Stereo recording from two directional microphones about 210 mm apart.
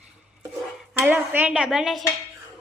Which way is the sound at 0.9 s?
10° right (ahead or behind).